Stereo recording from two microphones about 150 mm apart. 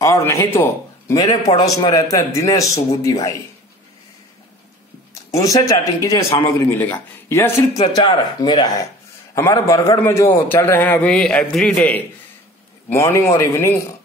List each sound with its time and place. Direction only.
0.0 s a man's voice: 20° left (ahead or behind)
5.4 s a man's voice: 20° left (ahead or behind)
7.9 s a man's voice: 30° left (ahead or behind); by 12.0 s 10° left (ahead or behind)
12.9 s a man's voice: 20° left (ahead or behind)